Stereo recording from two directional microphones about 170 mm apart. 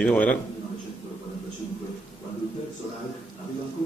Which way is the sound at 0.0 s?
5° left (ahead or behind).